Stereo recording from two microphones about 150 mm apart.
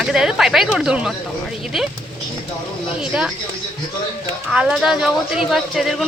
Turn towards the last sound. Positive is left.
turn(degrees=0)  # may be behind; listen again after turning